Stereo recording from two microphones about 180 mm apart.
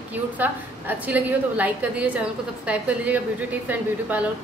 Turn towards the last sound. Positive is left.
turn(degrees=-10)  # may be behind; listen again after turning